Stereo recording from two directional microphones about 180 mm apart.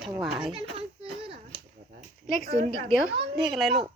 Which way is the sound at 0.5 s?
30° right (ahead or behind).